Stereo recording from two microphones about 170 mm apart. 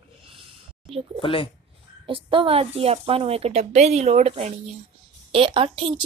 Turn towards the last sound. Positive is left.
turn(degrees=-30)  # may be behind; listen again after turning